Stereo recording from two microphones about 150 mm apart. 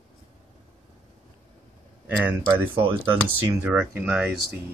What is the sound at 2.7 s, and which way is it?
Speech, 35° right (ahead or behind).